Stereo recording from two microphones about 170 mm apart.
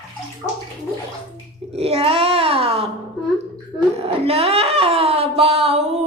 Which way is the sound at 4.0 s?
35° right (ahead or behind).